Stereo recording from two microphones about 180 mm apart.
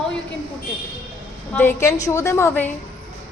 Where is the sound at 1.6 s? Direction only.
15° left (ahead or behind).